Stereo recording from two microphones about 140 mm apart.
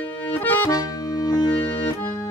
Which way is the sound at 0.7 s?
25° left (ahead or behind).